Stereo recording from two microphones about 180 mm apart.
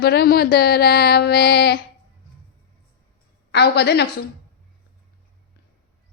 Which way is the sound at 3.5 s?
65° left (ahead or behind).